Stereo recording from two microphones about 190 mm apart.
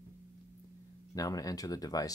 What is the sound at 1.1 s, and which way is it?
Speech, 20° left (ahead or behind).